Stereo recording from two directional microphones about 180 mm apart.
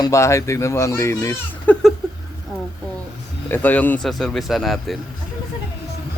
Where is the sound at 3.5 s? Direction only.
10° left (ahead or behind).